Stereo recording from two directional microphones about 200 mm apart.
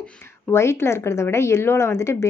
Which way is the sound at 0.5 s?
15° left (ahead or behind).